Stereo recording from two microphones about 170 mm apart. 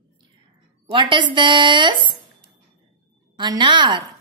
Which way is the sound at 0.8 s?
25° right (ahead or behind).